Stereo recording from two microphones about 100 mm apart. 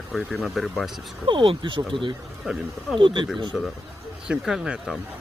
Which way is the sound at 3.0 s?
55° right (ahead or behind).